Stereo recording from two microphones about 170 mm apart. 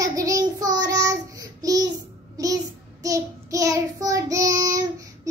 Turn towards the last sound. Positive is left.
turn(degrees=-20)  # may be behind; listen again after turning